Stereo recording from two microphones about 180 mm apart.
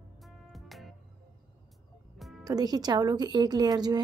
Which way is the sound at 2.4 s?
20° right (ahead or behind).